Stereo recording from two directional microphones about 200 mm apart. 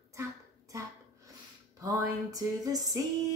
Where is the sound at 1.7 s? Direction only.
15° right (ahead or behind).